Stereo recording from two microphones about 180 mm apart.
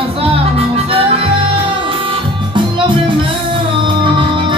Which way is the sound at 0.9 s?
30° right (ahead or behind).